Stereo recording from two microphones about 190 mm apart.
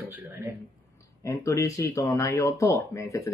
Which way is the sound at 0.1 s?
10° right (ahead or behind).